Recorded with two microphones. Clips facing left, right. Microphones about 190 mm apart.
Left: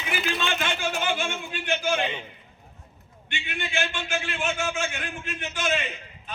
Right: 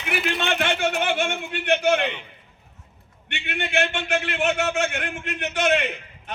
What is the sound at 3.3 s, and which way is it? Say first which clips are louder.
A man's voice: right 5 dB; 65° right (ahead or behind).